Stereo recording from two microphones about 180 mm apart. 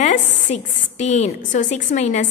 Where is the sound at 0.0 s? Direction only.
40° left (ahead or behind).